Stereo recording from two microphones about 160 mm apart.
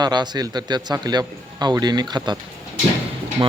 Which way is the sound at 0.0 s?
25° right (ahead or behind).